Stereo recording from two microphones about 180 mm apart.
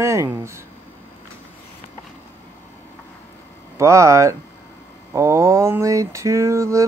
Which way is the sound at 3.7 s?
15° right (ahead or behind).